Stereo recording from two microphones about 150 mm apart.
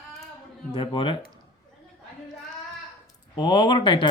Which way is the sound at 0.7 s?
35° left (ahead or behind).